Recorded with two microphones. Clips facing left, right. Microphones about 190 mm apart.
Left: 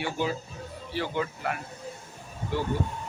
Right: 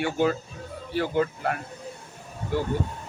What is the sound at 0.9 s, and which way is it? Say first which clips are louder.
Speech: right 6 dB; 45° right (ahead or behind).